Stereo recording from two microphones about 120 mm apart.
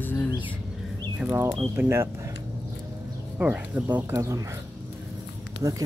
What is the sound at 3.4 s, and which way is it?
Speech, 20° right (ahead or behind).